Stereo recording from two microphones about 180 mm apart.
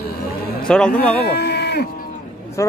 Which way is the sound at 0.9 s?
65° left (ahead or behind).